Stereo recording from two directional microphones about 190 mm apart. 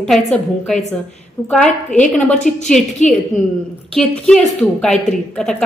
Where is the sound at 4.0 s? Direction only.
5° left (ahead or behind).